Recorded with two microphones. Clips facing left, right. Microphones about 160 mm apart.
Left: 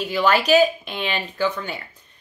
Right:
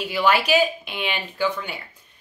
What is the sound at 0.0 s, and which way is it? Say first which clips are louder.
A woman's voice: left 1 dB; 10° right (ahead or behind).